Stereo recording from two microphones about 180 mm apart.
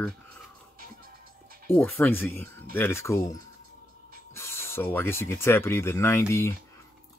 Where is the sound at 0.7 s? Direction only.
55° right (ahead or behind).